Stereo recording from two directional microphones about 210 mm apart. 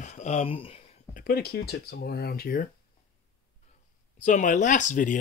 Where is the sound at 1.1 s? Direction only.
45° left (ahead or behind).